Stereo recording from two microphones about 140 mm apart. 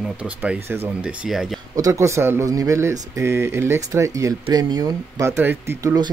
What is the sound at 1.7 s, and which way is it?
Speech, 25° right (ahead or behind).